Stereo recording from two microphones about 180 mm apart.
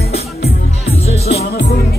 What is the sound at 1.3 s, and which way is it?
Music, 65° left (ahead or behind).